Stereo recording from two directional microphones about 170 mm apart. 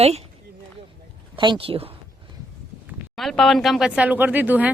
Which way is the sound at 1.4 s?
30° right (ahead or behind).